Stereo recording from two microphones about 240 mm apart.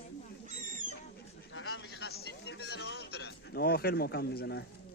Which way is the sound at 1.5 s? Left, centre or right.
Left.